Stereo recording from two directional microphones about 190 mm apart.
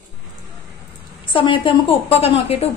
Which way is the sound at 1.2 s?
25° left (ahead or behind).